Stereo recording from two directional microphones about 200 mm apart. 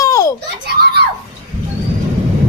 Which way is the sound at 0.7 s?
50° right (ahead or behind).